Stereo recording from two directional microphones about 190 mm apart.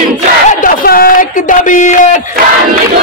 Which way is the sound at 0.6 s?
50° left (ahead or behind).